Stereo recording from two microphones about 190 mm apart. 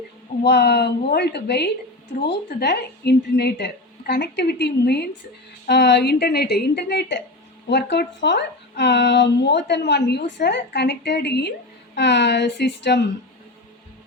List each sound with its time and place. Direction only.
0.4 s speech: 60° left (ahead or behind)